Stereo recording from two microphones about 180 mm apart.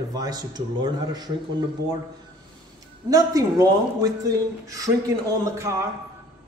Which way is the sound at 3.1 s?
20° right (ahead or behind).